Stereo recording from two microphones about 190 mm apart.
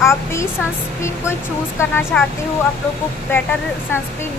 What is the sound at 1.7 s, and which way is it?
Speech, 10° left (ahead or behind).